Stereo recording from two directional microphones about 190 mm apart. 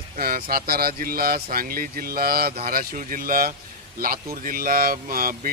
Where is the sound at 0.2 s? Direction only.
50° right (ahead or behind).